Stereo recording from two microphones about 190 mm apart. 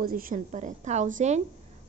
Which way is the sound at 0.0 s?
50° right (ahead or behind).